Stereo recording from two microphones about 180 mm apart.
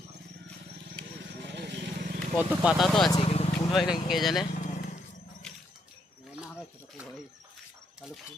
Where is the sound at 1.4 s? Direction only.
70° right (ahead or behind).